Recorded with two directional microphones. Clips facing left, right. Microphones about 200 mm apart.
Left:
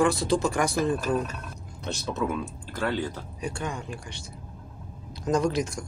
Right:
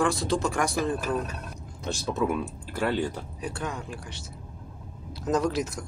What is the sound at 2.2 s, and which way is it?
Speech, 10° right (ahead or behind).